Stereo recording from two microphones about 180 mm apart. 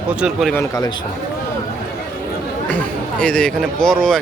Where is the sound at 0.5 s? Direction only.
20° left (ahead or behind).